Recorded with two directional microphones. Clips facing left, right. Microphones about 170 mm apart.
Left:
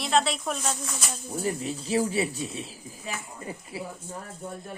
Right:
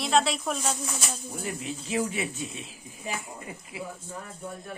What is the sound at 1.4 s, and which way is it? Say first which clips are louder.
Speech: left 6 dB; 35° left (ahead or behind).